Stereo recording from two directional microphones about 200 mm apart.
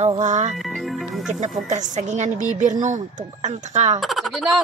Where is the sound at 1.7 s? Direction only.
40° right (ahead or behind).